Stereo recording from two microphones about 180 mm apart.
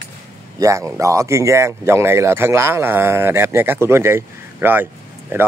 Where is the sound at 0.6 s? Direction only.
15° right (ahead or behind).